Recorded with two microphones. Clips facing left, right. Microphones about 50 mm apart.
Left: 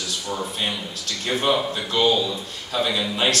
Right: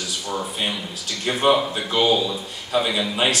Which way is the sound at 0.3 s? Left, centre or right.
Centre.